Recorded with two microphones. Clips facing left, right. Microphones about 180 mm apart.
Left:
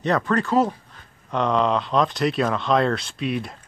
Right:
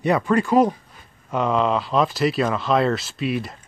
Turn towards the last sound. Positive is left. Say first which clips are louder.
# right 1 dB
turn(degrees=0)  # may be behind; listen again after turning